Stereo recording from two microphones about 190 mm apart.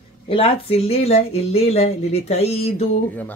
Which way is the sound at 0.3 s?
30° left (ahead or behind).